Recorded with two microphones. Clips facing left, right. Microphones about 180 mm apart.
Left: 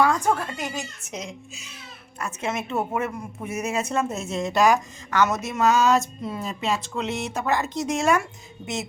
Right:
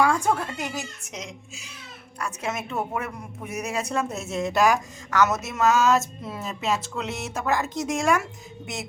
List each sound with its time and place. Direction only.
0.0 s cat: 10° right (ahead or behind)
0.3 s speech: 15° left (ahead or behind)
2.2 s speech: centre (ahead or behind)